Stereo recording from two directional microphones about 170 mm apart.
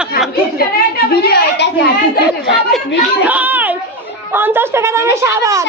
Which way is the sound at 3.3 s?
10° right (ahead or behind).